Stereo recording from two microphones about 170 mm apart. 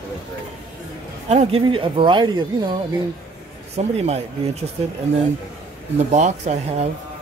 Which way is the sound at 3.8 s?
40° right (ahead or behind).